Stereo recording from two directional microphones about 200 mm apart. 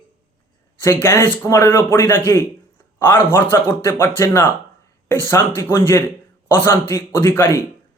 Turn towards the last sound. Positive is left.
turn(degrees=10)  # may be behind; listen again after turning